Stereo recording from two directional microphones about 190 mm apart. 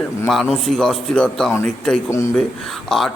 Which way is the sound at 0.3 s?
Centre (ahead or behind).